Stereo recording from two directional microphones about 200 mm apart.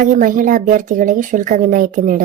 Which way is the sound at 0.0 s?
40° right (ahead or behind).